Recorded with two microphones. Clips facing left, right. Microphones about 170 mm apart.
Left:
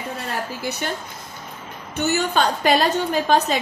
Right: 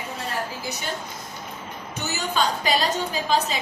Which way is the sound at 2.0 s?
60° left (ahead or behind).